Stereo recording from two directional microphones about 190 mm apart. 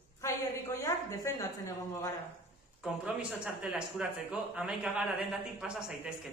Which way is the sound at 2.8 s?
5° right (ahead or behind).